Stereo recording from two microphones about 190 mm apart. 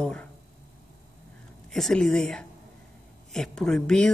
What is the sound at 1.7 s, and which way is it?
A man's voice, 5° left (ahead or behind).